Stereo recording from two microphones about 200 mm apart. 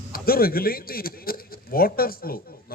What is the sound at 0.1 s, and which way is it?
A man's voice, 50° left (ahead or behind).